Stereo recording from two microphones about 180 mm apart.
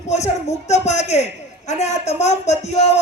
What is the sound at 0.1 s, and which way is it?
A man's voice, 40° left (ahead or behind).